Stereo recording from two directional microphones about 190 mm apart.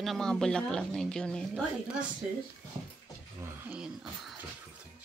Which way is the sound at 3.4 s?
5° right (ahead or behind).